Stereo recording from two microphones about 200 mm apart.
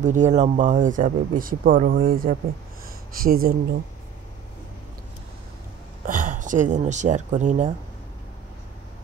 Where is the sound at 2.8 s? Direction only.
45° right (ahead or behind).